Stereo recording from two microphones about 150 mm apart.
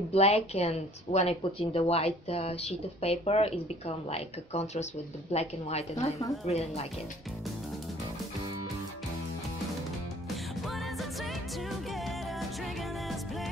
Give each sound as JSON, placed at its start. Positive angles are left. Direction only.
{"t": 0.1, "sound": "a woman's voice", "side_deg": 45}
{"t": 10.3, "sound": "music", "side_deg": 0}